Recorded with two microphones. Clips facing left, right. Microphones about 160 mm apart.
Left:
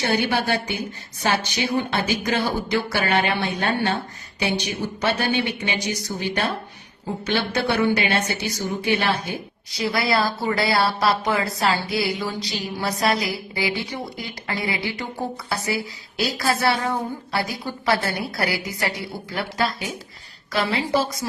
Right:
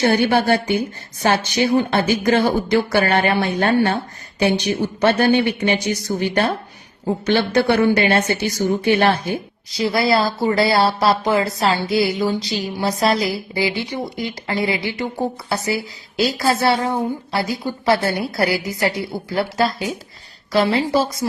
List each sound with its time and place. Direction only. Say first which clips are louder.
0.0 s speech: right 6 dB; 55° right (ahead or behind)
4.9 s speech: right 7 dB; 50° right (ahead or behind)
9.7 s a woman's voice: right 5 dB; 30° right (ahead or behind)